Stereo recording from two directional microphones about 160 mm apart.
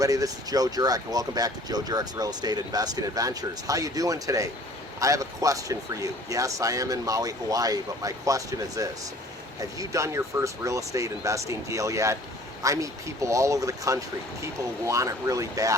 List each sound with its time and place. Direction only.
0.0 s speech: 20° right (ahead or behind)